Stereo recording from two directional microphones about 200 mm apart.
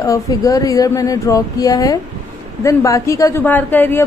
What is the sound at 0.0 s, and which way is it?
A woman's voice, 15° left (ahead or behind).